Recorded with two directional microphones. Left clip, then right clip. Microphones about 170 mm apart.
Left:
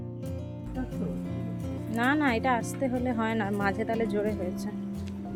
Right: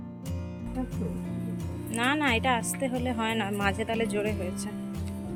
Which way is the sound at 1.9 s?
15° left (ahead or behind).